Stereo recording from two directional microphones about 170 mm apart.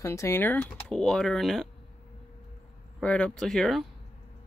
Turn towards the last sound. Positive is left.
turn(degrees=0)  # may be behind; listen again after turning